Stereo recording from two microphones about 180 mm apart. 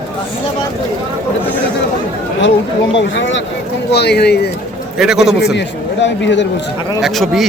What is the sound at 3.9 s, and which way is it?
Speech, 65° left (ahead or behind).